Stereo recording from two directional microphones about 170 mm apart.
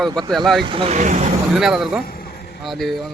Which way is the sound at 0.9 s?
50° right (ahead or behind).